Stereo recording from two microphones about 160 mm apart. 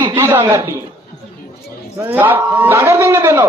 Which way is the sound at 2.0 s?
10° right (ahead or behind).